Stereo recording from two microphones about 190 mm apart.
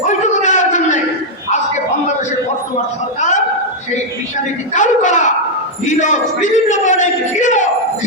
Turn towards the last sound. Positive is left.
turn(degrees=40)  # may be behind; listen again after turning